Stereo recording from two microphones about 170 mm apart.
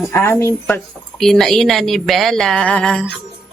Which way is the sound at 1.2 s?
Centre (ahead or behind).